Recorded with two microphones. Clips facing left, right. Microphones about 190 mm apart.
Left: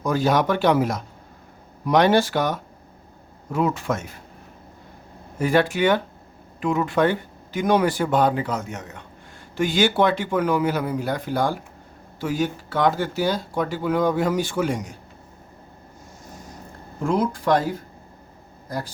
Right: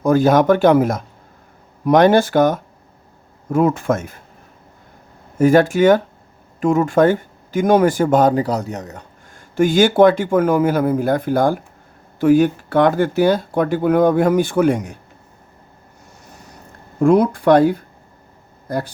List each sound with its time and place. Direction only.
0.0 s speech: 50° right (ahead or behind)
5.4 s speech: 45° right (ahead or behind)
9.6 s speech: 50° right (ahead or behind)
17.0 s speech: 60° right (ahead or behind)